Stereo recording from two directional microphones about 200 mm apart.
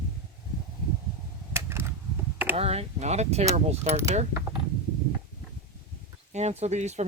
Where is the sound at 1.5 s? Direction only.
10° right (ahead or behind).